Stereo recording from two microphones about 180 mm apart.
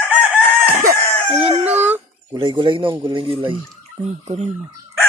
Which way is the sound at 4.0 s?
40° right (ahead or behind).